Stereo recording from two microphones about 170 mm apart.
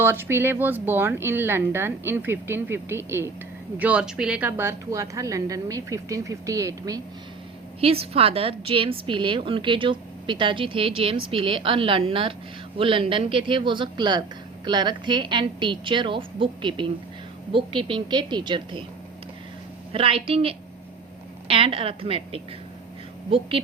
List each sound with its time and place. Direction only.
0.0 s speech: 15° right (ahead or behind)
7.8 s a woman's voice: 35° right (ahead or behind)
19.9 s a woman's voice: 35° right (ahead or behind)